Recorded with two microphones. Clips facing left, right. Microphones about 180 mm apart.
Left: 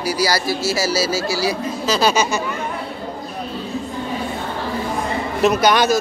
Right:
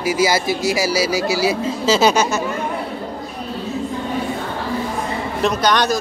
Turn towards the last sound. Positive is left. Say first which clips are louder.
# left 2 dB
turn(degrees=5)  # may be behind; listen again after turning